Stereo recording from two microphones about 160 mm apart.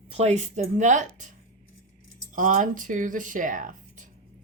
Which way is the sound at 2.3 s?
55° right (ahead or behind).